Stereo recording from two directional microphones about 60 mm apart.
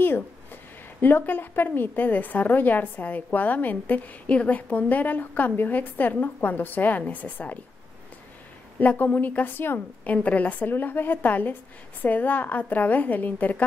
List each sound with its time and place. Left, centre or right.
0.0 s a sound: left
1.0 s a woman's voice: left
8.7 s a woman's voice: left